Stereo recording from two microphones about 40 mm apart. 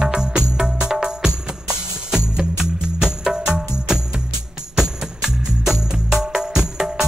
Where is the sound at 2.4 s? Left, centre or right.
Centre.